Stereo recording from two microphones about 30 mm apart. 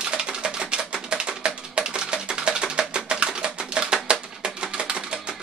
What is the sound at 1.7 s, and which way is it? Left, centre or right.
Music, right.